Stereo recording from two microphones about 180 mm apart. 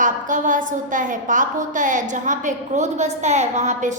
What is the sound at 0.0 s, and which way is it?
A woman's voice, 45° right (ahead or behind).